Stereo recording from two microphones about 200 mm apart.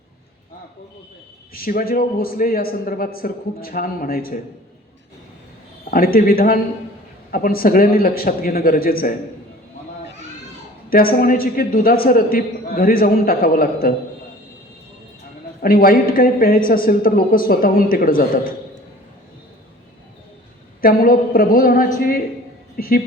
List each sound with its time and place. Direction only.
1.5 s a man's voice: 45° left (ahead or behind)
5.9 s a man's voice: 45° left (ahead or behind)
10.8 s a man's voice: 45° left (ahead or behind)
15.6 s a man's voice: 45° left (ahead or behind)
20.8 s a man's voice: 45° left (ahead or behind)